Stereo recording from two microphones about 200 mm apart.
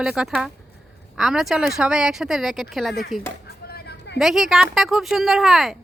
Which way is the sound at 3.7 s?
55° left (ahead or behind).